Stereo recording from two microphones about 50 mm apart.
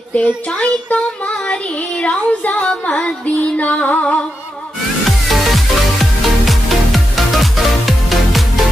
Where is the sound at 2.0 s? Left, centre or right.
Left.